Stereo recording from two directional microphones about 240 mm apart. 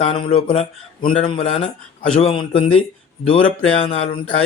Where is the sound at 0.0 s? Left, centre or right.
Left.